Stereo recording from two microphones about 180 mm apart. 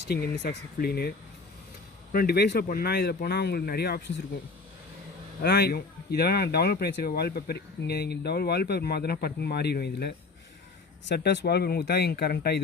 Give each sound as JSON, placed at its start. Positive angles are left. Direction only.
{"t": 0.1, "sound": "speech", "side_deg": 60}
{"t": 2.1, "sound": "speech", "side_deg": 60}
{"t": 5.4, "sound": "speech", "side_deg": 60}